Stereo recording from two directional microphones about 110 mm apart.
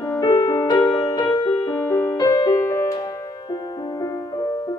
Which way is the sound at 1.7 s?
20° left (ahead or behind).